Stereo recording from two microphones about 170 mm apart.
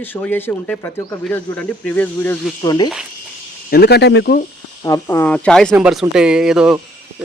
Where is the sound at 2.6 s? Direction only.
25° left (ahead or behind).